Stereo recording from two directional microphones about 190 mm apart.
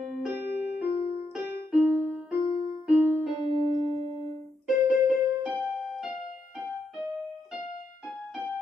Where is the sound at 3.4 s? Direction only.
35° right (ahead or behind).